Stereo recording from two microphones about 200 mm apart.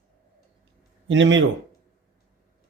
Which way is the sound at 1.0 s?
65° right (ahead or behind).